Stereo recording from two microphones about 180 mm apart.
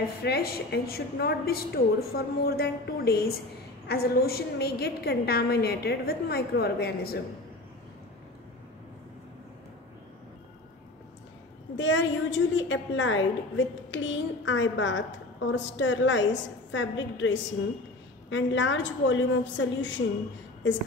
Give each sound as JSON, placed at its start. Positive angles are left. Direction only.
{"t": 0.2, "sound": "a woman's voice", "side_deg": 65}
{"t": 11.7, "sound": "a woman's voice", "side_deg": 90}